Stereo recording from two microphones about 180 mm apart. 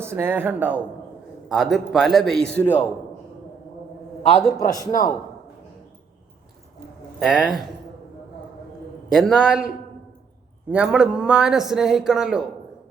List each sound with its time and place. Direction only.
0.0 s a man's voice: 15° right (ahead or behind); by 2.7 s 5° left (ahead or behind)
4.5 s a man's voice: 20° left (ahead or behind)
7.2 s a man's voice: centre (ahead or behind)
9.1 s a man's voice: centre (ahead or behind)
10.7 s a man's voice: 5° right (ahead or behind)